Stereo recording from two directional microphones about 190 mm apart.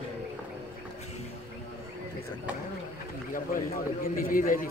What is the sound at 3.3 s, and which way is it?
A man's voice, 45° left (ahead or behind).